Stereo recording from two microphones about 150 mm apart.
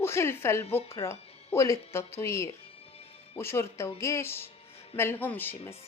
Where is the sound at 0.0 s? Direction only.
15° left (ahead or behind).